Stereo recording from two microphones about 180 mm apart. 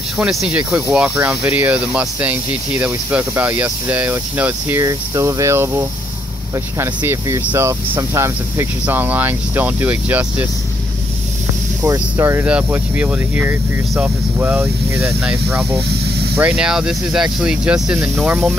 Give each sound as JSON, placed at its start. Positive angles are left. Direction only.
{"t": 0.2, "sound": "speech", "side_deg": -5}
{"t": 11.8, "sound": "speech", "side_deg": -15}